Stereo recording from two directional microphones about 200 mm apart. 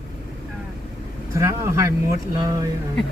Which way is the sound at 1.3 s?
15° right (ahead or behind).